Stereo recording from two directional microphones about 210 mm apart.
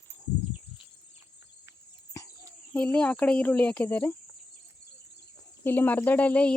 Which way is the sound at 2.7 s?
5° left (ahead or behind).